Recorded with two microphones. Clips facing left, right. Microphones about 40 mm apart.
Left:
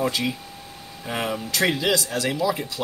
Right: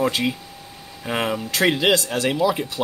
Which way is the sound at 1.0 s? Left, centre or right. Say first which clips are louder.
Right 3 dB; right.